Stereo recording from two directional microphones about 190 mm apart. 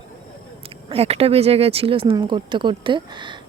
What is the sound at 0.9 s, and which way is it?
Speech, 30° right (ahead or behind).